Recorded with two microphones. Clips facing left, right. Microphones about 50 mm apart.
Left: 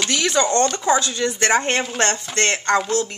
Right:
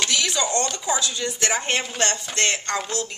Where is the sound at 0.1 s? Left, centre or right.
Left.